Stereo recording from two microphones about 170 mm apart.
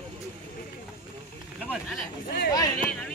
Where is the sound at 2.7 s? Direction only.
5° left (ahead or behind).